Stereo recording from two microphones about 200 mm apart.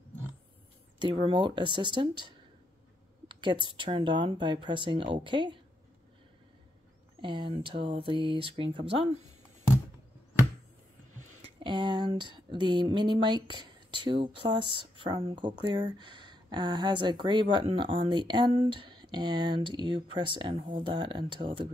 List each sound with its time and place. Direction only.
1.0 s speech: 25° right (ahead or behind)
7.2 s speech: 25° right (ahead or behind)
11.6 s speech: 25° right (ahead or behind)